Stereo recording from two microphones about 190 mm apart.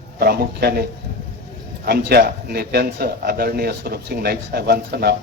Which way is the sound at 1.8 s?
55° right (ahead or behind).